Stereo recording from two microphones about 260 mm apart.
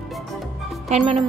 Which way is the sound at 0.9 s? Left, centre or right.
Right.